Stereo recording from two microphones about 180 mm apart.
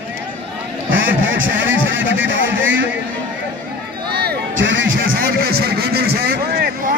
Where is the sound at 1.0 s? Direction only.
90° right.